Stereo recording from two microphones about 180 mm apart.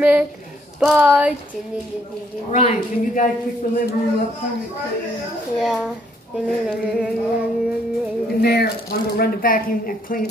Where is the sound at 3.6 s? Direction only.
55° left (ahead or behind).